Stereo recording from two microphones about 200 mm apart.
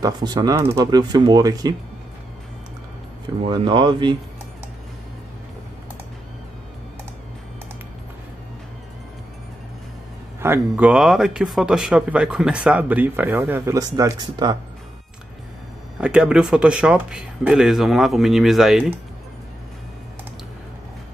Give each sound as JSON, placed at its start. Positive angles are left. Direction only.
{"t": 0.0, "sound": "speech", "side_deg": -20}
{"t": 3.4, "sound": "speech", "side_deg": -25}
{"t": 10.4, "sound": "speech", "side_deg": -10}
{"t": 16.0, "sound": "speech", "side_deg": -5}